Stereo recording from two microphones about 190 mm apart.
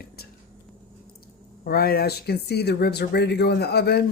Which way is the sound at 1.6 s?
50° left (ahead or behind).